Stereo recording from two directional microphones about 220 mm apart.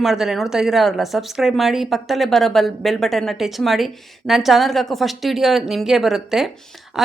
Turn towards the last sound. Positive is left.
turn(degrees=0)  # may be behind; listen again after turning